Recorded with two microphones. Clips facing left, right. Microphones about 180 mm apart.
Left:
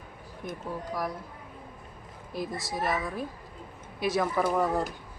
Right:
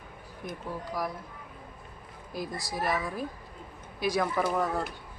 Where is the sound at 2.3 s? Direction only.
Centre (ahead or behind).